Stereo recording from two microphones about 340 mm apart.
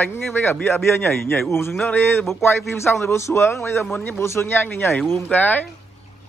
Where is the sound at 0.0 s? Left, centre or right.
Centre.